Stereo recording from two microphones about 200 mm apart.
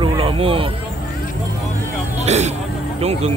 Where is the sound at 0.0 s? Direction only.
25° right (ahead or behind).